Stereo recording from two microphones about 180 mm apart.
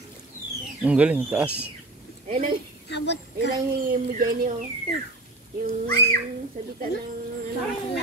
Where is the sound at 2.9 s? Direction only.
75° left (ahead or behind).